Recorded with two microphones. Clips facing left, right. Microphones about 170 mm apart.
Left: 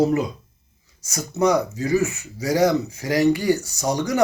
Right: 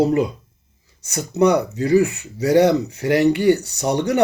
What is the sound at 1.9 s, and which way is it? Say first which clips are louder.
Speech: right 5 dB; 60° right (ahead or behind).